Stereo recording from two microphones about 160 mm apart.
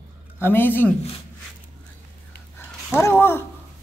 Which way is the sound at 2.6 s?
15° left (ahead or behind).